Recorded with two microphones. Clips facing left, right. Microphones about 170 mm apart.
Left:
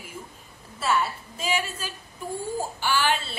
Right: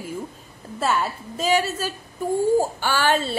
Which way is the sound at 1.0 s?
40° right (ahead or behind).